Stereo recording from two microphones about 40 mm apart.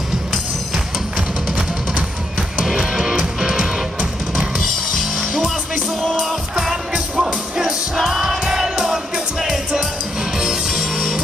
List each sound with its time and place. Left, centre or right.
2.6 s music: centre
6.5 s music: centre